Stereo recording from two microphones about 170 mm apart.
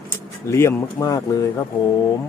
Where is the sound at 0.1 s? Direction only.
15° left (ahead or behind).